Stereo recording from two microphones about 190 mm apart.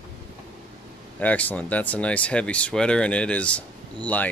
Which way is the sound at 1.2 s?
10° left (ahead or behind).